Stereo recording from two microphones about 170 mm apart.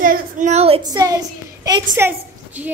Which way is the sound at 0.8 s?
20° right (ahead or behind).